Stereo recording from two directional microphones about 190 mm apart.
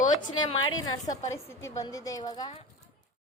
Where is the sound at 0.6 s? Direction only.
90° left.